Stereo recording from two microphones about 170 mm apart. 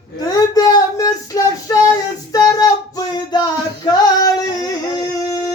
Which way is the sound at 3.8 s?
25° left (ahead or behind).